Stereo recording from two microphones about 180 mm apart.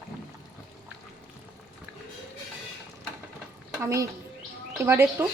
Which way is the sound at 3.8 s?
15° right (ahead or behind).